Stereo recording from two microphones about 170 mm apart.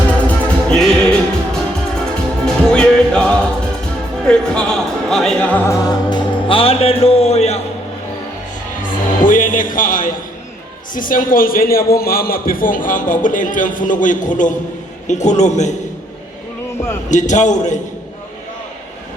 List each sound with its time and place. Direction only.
0.1 s music: 5° left (ahead or behind)
4.3 s speech: 5° left (ahead or behind)
5.9 s speech: 30° left (ahead or behind)
8.8 s music: 50° left (ahead or behind)
10.9 s a man's voice: 55° left (ahead or behind)
17.1 s a man's voice: 45° left (ahead or behind)